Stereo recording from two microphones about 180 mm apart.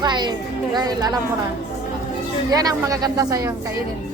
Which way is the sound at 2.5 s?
20° right (ahead or behind).